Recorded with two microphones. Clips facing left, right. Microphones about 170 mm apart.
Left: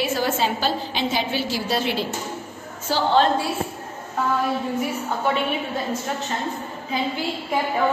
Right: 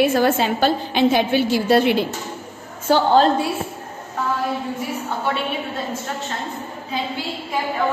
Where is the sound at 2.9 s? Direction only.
45° right (ahead or behind).